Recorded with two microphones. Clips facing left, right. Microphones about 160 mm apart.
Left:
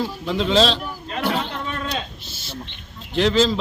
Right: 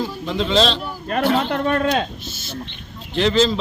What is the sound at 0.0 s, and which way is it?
Speech, centre (ahead or behind).